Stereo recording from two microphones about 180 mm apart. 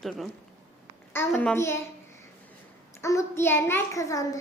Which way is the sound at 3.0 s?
15° left (ahead or behind).